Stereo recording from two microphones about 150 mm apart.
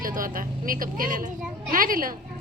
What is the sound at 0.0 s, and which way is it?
A woman's voice, 65° right (ahead or behind).